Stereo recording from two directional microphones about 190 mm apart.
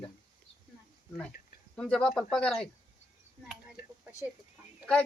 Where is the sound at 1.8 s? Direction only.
5° left (ahead or behind).